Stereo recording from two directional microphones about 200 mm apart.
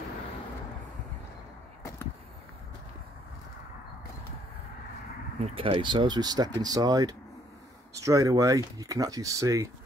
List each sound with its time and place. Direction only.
5.4 s speech: 25° right (ahead or behind)